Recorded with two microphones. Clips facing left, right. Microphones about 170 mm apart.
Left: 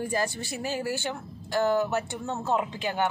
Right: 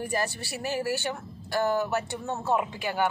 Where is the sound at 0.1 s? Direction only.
20° left (ahead or behind).